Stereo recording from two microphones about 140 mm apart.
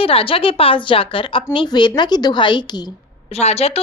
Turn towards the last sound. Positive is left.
turn(degrees=45)  # may be behind; listen again after turning